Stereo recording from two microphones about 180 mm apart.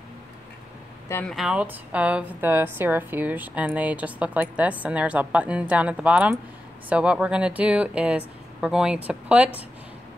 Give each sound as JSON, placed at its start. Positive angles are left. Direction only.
{"t": 1.0, "sound": "speech", "side_deg": 10}
{"t": 1.3, "sound": "a woman's voice", "side_deg": -5}